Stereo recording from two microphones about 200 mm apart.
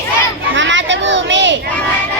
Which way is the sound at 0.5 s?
65° right (ahead or behind).